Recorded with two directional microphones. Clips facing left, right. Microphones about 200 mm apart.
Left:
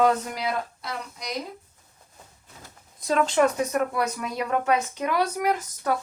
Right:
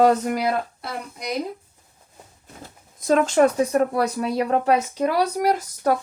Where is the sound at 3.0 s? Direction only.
45° right (ahead or behind).